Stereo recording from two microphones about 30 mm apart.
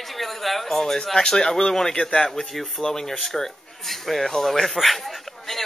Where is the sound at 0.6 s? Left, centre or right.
Centre.